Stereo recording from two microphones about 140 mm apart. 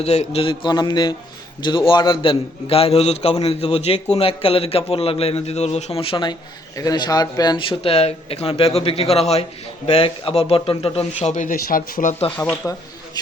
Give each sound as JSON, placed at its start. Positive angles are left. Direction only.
{"t": 0.0, "sound": "a man's voice", "side_deg": 50}
{"t": 12.4, "sound": "speech", "side_deg": 20}